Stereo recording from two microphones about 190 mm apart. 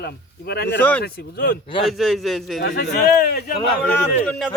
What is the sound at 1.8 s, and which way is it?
Speech, centre (ahead or behind).